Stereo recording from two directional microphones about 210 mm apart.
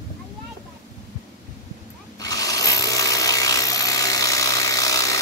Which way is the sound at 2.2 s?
15° left (ahead or behind).